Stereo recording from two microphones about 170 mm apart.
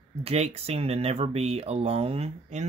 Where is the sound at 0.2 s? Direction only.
35° right (ahead or behind).